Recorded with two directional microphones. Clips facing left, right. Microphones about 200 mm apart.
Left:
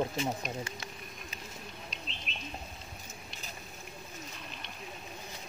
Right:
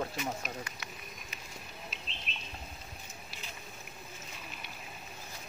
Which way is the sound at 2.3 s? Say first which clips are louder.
Left 1 dB; centre (ahead or behind).